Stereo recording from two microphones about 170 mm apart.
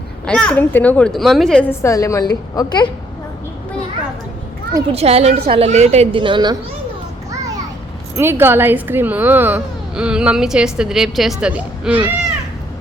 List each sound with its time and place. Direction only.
0.3 s a child's voice: 5° left (ahead or behind)
1.8 s a woman's voice: 20° left (ahead or behind)
4.9 s a woman's voice: 35° right (ahead or behind)
8.1 s speech: 15° right (ahead or behind)